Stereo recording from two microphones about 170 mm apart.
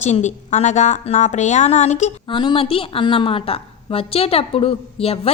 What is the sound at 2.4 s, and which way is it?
A woman's voice, 30° left (ahead or behind).